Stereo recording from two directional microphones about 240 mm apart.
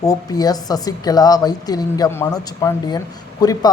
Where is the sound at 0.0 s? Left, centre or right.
Centre.